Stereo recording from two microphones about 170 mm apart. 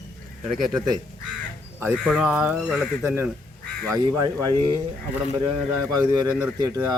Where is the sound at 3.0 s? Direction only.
15° right (ahead or behind).